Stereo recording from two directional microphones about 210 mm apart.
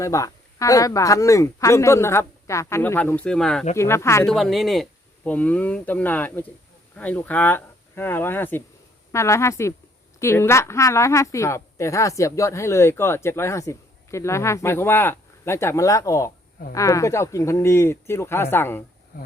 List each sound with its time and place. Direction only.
0.0 s a woman's voice: 15° left (ahead or behind)
4.3 s a woman's voice: centre (ahead or behind)
19.1 s speech: 45° left (ahead or behind)